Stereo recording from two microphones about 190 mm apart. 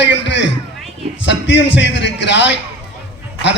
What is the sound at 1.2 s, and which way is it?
A man's voice, 70° left (ahead or behind).